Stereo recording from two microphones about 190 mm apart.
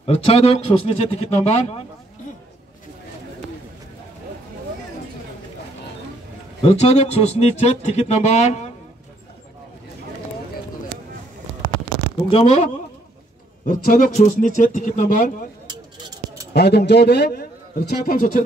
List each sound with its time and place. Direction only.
0.0 s speech: 30° left (ahead or behind)
6.6 s speech: 30° left (ahead or behind)
12.3 s speech: 30° left (ahead or behind)
13.7 s speech: 45° left (ahead or behind)
16.5 s a man's voice: 60° left (ahead or behind)